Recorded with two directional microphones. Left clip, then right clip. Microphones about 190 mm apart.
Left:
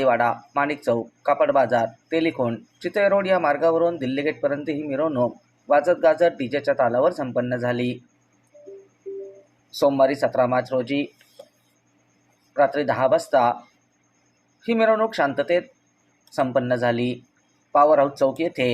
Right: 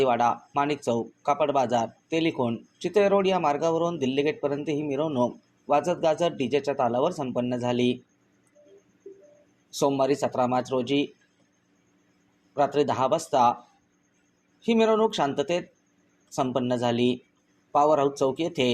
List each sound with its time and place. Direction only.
0.0 s speech: 25° right (ahead or behind)
9.7 s speech: 25° right (ahead or behind)
12.5 s speech: 25° right (ahead or behind)
14.8 s speech: 25° right (ahead or behind)